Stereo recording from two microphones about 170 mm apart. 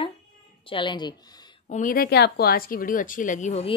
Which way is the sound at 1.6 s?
50° left (ahead or behind).